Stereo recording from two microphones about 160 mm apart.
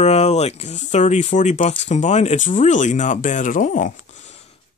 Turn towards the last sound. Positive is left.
turn(degrees=40)  # may be behind; listen again after turning